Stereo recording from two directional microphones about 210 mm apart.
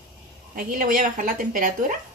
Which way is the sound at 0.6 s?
40° right (ahead or behind).